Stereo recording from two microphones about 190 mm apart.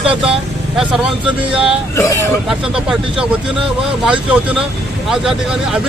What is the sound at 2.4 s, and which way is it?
Speech, 5° right (ahead or behind).